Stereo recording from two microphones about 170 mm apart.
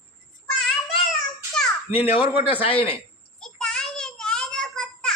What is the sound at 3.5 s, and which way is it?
Child singing, 5° left (ahead or behind).